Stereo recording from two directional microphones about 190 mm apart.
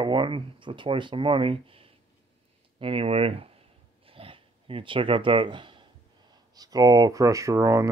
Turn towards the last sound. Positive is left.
turn(degrees=-15)  # may be behind; listen again after turning